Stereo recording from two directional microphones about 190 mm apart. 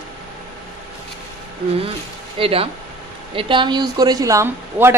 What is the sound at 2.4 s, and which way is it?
Speech, 30° right (ahead or behind).